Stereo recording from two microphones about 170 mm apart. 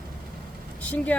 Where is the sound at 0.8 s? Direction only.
10° left (ahead or behind).